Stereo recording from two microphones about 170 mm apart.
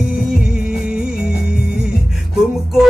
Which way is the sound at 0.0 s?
5° right (ahead or behind).